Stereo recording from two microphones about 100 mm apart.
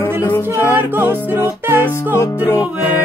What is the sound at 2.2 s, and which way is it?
Music, 25° left (ahead or behind).